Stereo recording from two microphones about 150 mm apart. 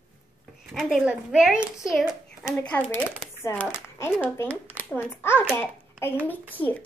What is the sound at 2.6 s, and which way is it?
A child's voice, 10° left (ahead or behind).